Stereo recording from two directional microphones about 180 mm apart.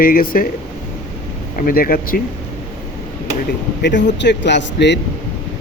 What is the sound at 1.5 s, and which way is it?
Speech, 55° left (ahead or behind).